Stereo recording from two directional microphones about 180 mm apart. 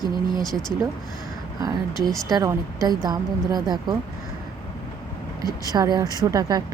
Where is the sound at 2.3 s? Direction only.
20° right (ahead or behind).